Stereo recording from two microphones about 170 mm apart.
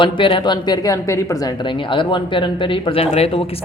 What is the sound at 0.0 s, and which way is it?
Speech, 30° left (ahead or behind).